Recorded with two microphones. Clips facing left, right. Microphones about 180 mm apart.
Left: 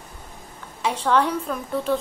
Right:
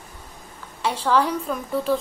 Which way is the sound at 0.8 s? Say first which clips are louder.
Even; centre (ahead or behind).